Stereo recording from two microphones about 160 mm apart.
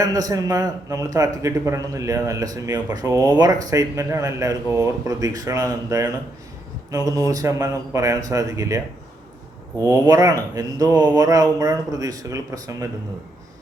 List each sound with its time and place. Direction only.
0.0 s a man's voice: 20° right (ahead or behind)